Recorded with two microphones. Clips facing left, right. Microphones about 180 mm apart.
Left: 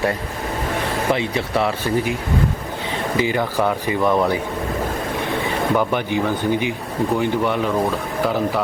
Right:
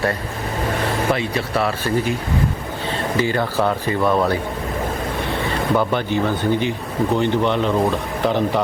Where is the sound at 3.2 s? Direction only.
15° left (ahead or behind).